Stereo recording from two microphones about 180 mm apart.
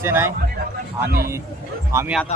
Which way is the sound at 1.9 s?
15° right (ahead or behind).